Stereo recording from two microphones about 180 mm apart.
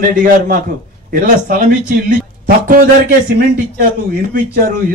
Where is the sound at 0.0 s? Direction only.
50° right (ahead or behind).